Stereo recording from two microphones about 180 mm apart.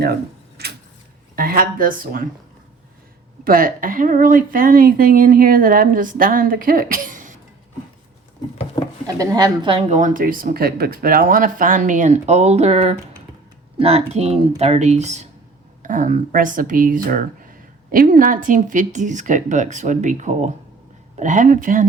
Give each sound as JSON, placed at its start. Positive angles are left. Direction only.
{"t": 0.0, "sound": "a sound", "side_deg": -60}
{"t": 1.4, "sound": "speech", "side_deg": -50}
{"t": 3.4, "sound": "speech", "side_deg": -50}
{"t": 9.1, "sound": "speech", "side_deg": -20}